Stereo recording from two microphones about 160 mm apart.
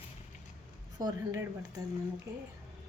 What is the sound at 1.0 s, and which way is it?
Speech, 20° right (ahead or behind).